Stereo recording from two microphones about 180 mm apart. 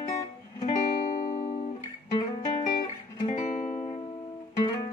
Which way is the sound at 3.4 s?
40° left (ahead or behind).